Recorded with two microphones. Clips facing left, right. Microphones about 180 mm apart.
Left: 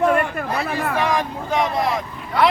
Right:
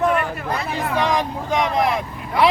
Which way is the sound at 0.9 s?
15° right (ahead or behind).